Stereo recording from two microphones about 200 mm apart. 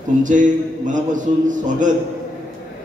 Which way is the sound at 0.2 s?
40° right (ahead or behind).